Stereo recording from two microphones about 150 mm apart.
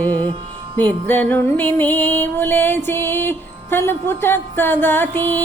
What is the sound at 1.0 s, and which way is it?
Music, 10° left (ahead or behind).